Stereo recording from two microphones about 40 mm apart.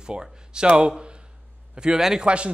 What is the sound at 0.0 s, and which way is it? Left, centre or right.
Speech, right.